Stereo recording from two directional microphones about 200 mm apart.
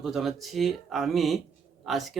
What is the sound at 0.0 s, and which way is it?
Speech, centre (ahead or behind).